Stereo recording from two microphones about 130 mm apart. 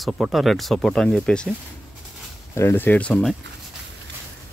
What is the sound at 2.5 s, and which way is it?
Speech, 20° left (ahead or behind).